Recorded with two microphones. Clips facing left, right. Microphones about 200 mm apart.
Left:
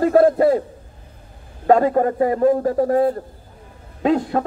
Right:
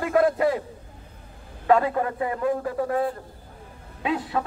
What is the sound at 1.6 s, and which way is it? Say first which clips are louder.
A man's voice: left 6 dB; 40° left (ahead or behind).